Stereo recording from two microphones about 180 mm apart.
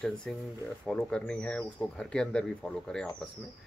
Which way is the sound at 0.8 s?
5° left (ahead or behind).